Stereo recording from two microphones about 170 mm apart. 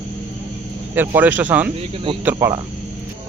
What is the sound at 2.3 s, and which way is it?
Speech, 20° right (ahead or behind).